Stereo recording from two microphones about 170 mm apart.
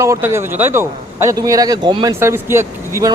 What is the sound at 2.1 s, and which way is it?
Speech, 15° right (ahead or behind).